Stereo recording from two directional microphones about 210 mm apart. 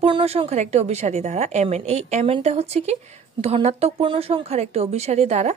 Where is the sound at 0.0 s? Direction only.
30° right (ahead or behind).